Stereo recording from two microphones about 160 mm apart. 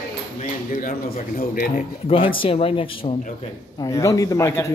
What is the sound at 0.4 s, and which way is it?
Speech, 60° left (ahead or behind).